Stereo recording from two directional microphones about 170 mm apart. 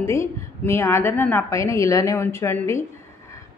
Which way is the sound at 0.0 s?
15° left (ahead or behind).